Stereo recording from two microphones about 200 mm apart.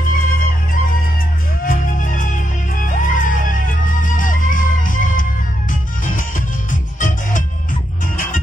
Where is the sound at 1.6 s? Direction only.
40° left (ahead or behind).